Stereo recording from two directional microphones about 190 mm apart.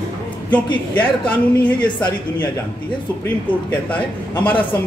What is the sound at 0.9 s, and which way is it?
Speech, 10° left (ahead or behind).